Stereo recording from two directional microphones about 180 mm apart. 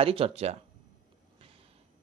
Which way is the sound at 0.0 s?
30° right (ahead or behind).